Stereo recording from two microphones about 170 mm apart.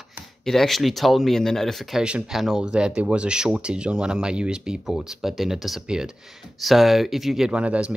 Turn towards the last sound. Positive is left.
turn(degrees=-5)  # may be behind; listen again after turning